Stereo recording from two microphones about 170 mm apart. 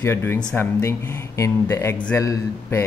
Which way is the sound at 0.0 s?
15° left (ahead or behind).